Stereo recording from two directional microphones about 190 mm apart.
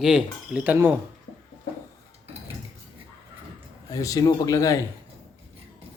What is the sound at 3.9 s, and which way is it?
Speech, 20° left (ahead or behind).